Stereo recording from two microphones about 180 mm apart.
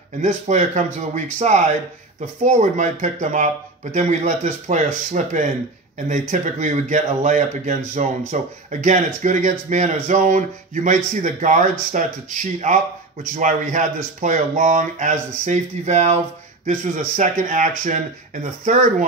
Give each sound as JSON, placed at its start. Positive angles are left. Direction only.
{"t": 0.2, "sound": "speech", "side_deg": -40}